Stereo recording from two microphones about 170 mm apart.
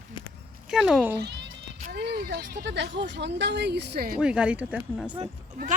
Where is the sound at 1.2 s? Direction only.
90° right.